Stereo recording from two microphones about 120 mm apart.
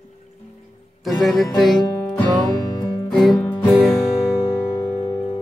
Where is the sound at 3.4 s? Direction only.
10° left (ahead or behind).